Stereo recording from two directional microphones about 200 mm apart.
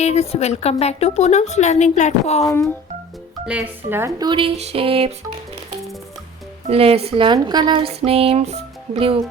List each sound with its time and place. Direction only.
0.0 s a woman's voice: 30° left (ahead or behind)
3.4 s speech: 5° right (ahead or behind); by 5.1 s 30° right (ahead or behind)
6.7 s speech: 30° right (ahead or behind)